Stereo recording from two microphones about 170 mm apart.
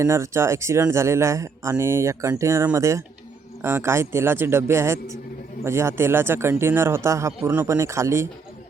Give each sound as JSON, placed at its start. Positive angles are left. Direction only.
{"t": 0.0, "sound": "speech", "side_deg": -15}